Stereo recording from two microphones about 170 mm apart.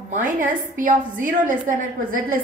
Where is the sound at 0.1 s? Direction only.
50° right (ahead or behind).